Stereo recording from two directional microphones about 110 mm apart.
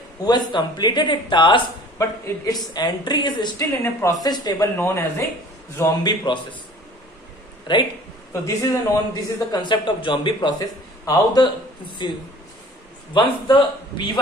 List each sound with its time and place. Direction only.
0.2 s speech: 40° left (ahead or behind)
2.0 s speech: 25° left (ahead or behind)
2.5 s speech: 40° left (ahead or behind)
3.8 s speech: 30° left (ahead or behind)
4.7 s speech: 20° left (ahead or behind)
6.0 s speech: 45° left (ahead or behind)
7.7 s speech: 45° left (ahead or behind)